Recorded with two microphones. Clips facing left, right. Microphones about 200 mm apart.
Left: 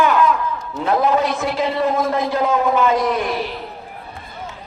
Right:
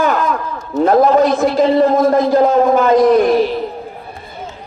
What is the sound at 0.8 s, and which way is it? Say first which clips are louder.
A man's voice: right 7 dB; 45° right (ahead or behind).